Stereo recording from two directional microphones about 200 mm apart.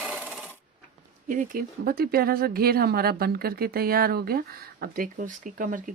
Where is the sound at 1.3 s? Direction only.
45° right (ahead or behind).